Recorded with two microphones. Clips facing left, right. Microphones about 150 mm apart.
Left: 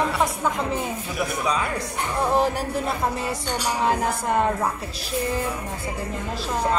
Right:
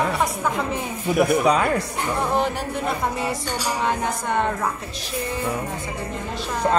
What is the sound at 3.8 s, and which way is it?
Speech, 5° left (ahead or behind).